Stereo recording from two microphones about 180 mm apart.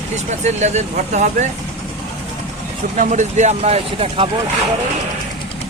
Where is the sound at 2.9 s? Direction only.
45° right (ahead or behind).